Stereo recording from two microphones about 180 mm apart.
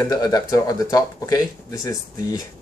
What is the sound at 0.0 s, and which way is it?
Speech, 20° left (ahead or behind).